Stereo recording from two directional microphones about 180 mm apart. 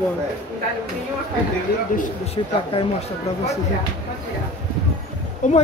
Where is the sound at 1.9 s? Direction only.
35° left (ahead or behind).